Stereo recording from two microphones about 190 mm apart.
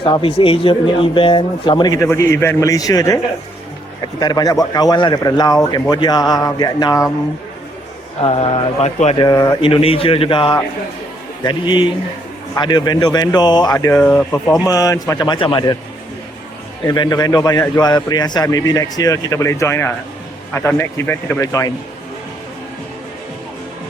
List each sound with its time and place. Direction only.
0.0 s a man's voice: 25° left (ahead or behind)
4.2 s a man's voice: 20° left (ahead or behind)
8.2 s speech: 30° left (ahead or behind)
9.1 s a man's voice: 20° left (ahead or behind)
14.7 s a man's voice: 20° left (ahead or behind)
16.8 s a man's voice: 20° left (ahead or behind)